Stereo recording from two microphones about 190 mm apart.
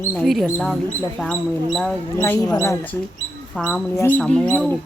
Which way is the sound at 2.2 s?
15° left (ahead or behind).